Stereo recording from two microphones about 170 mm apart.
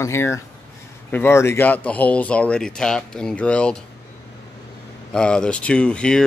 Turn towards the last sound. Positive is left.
turn(degrees=5)  # may be behind; listen again after turning